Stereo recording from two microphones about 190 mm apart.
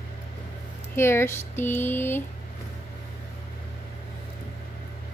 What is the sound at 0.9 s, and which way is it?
Speech, 15° left (ahead or behind).